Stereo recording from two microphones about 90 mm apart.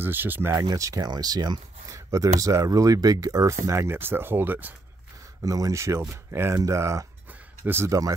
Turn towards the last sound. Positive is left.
turn(degrees=-25)  # may be behind; listen again after turning